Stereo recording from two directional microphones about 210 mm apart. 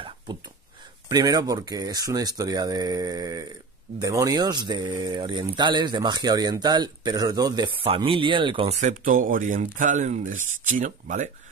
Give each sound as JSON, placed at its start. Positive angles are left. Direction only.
{"t": 1.0, "sound": "speech", "side_deg": -20}